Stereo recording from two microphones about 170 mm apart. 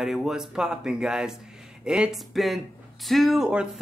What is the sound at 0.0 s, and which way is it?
Speech, centre (ahead or behind).